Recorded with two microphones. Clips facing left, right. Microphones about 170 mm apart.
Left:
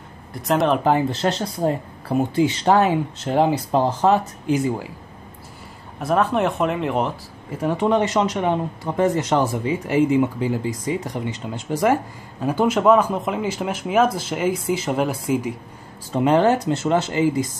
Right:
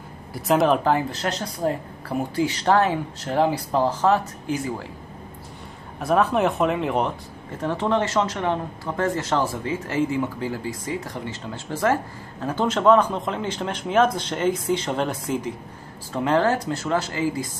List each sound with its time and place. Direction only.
0.3 s speech: centre (ahead or behind)
0.8 s speech: 25° left (ahead or behind)
5.9 s speech: centre (ahead or behind); by 17.5 s 20° left (ahead or behind)